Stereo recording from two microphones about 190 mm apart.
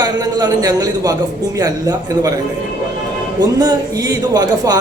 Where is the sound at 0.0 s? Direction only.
20° right (ahead or behind).